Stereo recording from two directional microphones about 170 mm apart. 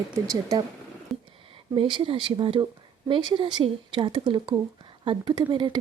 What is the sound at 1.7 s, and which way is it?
Speech, 30° right (ahead or behind).